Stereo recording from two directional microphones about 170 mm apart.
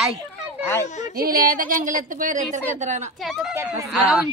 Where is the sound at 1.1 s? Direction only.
60° right (ahead or behind); by 3.1 s 45° right (ahead or behind).